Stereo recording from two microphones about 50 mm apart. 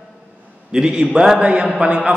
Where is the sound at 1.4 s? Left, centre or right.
Right.